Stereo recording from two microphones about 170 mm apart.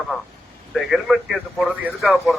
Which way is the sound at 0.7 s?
Centre (ahead or behind).